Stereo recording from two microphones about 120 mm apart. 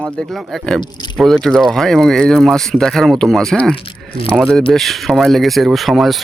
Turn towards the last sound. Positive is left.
turn(degrees=0)  # may be behind; listen again after turning